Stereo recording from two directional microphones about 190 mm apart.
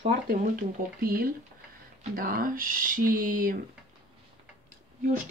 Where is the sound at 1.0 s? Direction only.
50° right (ahead or behind).